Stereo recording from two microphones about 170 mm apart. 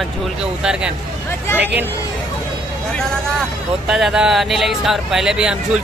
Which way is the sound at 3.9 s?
5° right (ahead or behind).